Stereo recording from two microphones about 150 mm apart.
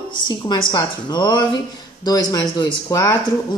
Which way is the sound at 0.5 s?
30° left (ahead or behind).